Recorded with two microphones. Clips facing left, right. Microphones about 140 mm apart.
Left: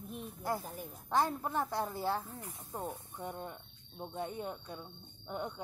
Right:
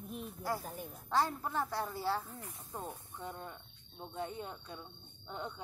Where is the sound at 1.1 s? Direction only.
20° left (ahead or behind).